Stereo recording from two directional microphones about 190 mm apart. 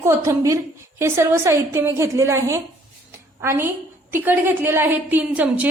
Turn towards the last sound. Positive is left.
turn(degrees=-10)  # may be behind; listen again after turning